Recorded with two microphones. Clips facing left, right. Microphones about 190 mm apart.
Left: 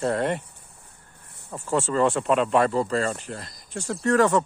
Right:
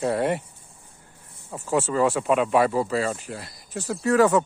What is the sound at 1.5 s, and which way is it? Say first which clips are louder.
Speech: right 1 dB; 10° right (ahead or behind).